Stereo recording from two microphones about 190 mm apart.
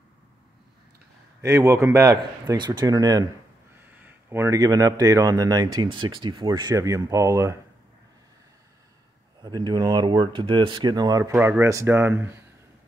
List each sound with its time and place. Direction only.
1.4 s speech: 15° right (ahead or behind)
9.4 s speech: 20° right (ahead or behind)